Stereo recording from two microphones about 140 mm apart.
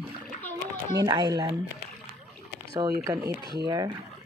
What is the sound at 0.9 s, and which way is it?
Speech, 30° right (ahead or behind).